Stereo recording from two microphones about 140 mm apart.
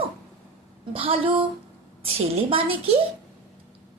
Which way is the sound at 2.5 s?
40° right (ahead or behind).